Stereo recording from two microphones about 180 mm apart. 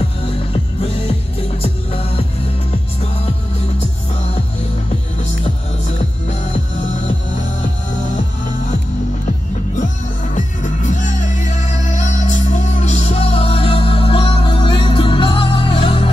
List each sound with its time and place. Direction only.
1.6 s music: 35° left (ahead or behind)
10.3 s music: 45° left (ahead or behind)